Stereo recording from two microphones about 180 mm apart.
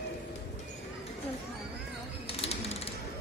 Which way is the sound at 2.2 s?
35° left (ahead or behind).